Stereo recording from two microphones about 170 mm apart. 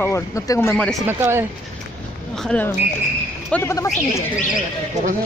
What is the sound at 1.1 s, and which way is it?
Speech, 15° right (ahead or behind).